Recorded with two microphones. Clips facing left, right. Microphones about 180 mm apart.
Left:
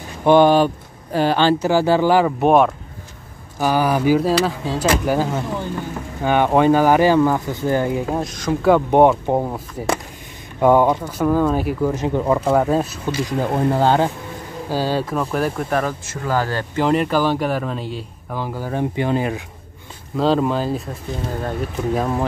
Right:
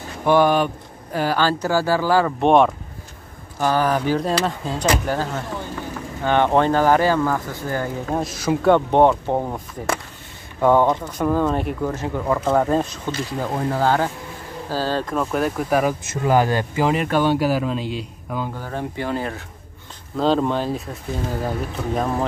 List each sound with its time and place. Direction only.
0.2 s speech: 25° left (ahead or behind)
2.4 s a man's voice: 5° left (ahead or behind); by 8.0 s 20° left (ahead or behind)
8.1 s a man's voice: centre (ahead or behind)
8.7 s speech: 10° left (ahead or behind)
11.9 s speech: 20° left (ahead or behind)
12.4 s speech: 5° left (ahead or behind)
13.6 s speech: 25° left (ahead or behind)
14.7 s a man's voice: 10° left (ahead or behind); by 16.8 s 15° right (ahead or behind)
16.8 s a man's voice: centre (ahead or behind); by 19.4 s 15° left (ahead or behind)
20.2 s a man's voice: centre (ahead or behind)